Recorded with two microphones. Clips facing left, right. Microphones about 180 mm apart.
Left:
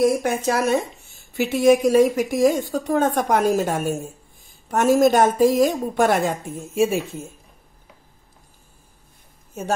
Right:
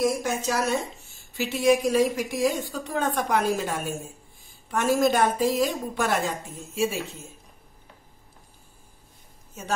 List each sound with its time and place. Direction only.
0.0 s a woman's voice: 55° left (ahead or behind)